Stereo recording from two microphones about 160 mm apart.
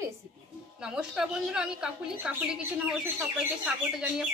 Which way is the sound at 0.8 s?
5° right (ahead or behind).